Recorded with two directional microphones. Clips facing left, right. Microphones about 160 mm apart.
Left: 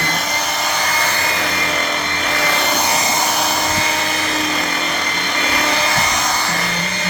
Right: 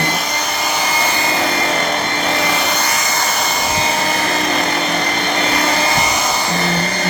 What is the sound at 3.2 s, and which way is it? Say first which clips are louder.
Vehicle: left 1 dB; 10° left (ahead or behind).